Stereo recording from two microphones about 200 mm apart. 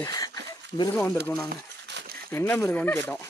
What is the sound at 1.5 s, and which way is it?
Crumpling, 50° right (ahead or behind).